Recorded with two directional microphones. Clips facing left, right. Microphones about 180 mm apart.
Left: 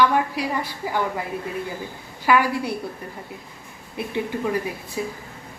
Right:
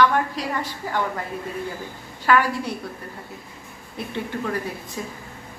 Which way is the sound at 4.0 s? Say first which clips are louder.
Left 3 dB; 10° left (ahead or behind).